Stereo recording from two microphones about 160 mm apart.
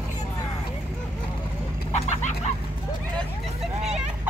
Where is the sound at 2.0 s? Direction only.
45° left (ahead or behind).